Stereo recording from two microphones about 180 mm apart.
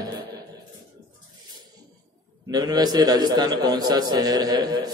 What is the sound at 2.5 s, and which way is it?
A man's voice, 25° right (ahead or behind).